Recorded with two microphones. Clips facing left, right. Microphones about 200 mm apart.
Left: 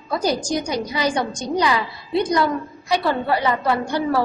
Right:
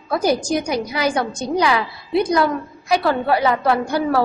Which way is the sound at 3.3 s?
10° right (ahead or behind).